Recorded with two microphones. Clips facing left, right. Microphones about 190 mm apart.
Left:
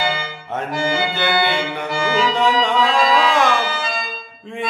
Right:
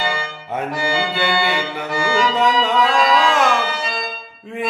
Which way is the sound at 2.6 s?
Centre (ahead or behind).